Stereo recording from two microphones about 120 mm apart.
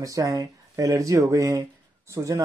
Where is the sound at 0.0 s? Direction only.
30° right (ahead or behind).